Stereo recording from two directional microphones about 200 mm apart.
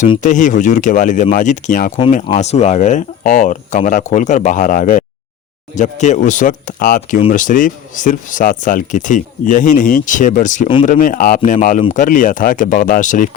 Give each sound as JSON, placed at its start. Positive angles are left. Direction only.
{"t": 0.2, "sound": "speech", "side_deg": 40}